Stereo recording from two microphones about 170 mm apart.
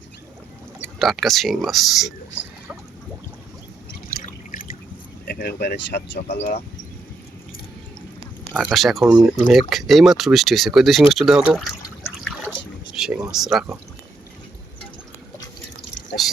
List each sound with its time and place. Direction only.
0.9 s speech: centre (ahead or behind)
4.5 s drip: 55° left (ahead or behind)
5.2 s speech: 70° left (ahead or behind)
8.5 s speech: centre (ahead or behind)
12.4 s a sound: 5° right (ahead or behind)
16.2 s speech: centre (ahead or behind)